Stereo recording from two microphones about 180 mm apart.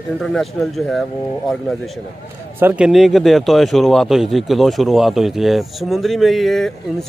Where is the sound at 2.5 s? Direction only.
10° right (ahead or behind).